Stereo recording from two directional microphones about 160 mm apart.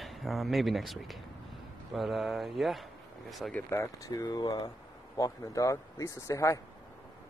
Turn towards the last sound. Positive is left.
turn(degrees=20)  # may be behind; listen again after turning